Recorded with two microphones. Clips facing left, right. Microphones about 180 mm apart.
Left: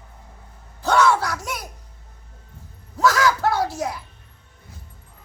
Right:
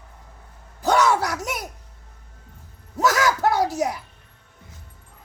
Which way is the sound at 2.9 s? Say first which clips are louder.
Left 1 dB; 20° right (ahead or behind).